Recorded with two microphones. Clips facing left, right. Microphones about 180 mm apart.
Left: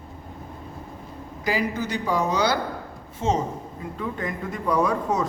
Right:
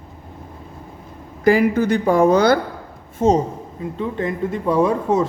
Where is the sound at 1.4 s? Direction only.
50° right (ahead or behind).